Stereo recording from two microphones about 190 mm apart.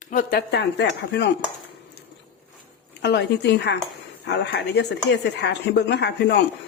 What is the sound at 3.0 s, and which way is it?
A woman's voice, 65° left (ahead or behind).